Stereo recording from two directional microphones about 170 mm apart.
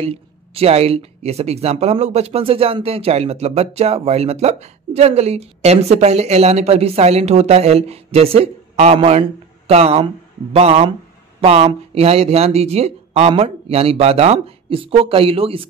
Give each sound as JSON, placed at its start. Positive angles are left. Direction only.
{"t": 0.0, "sound": "speech", "side_deg": -35}